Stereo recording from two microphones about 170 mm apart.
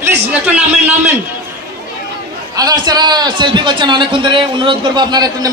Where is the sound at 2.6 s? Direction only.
25° right (ahead or behind).